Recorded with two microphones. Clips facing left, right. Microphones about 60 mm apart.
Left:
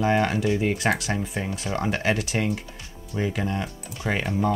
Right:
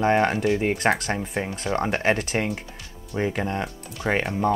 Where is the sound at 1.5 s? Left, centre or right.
Right.